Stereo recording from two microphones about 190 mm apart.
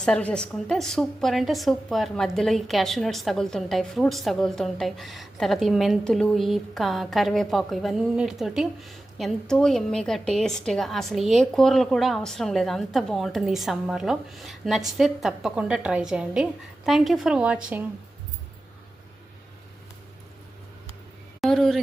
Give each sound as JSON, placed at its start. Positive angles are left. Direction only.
{"t": 0.0, "sound": "a woman's voice", "side_deg": 5}
{"t": 21.4, "sound": "a woman's voice", "side_deg": 0}